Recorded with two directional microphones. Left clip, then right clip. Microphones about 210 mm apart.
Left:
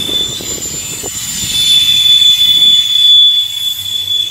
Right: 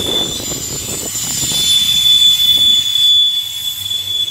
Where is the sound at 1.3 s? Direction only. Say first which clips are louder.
Left 4 dB; 50° right (ahead or behind); by 3.1 s 35° right (ahead or behind).